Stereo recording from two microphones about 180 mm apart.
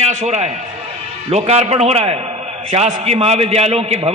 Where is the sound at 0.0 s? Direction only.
40° right (ahead or behind).